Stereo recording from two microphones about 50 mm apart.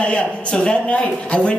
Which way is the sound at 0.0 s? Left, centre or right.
Left.